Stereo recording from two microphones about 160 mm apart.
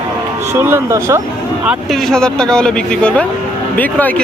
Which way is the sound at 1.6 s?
5° right (ahead or behind).